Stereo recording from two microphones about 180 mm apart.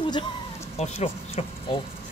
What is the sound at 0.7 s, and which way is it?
Speech, 35° left (ahead or behind).